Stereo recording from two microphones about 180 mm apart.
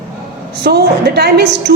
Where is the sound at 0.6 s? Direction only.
65° right (ahead or behind).